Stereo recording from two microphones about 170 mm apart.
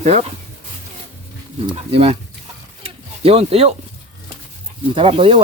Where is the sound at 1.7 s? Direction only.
35° right (ahead or behind).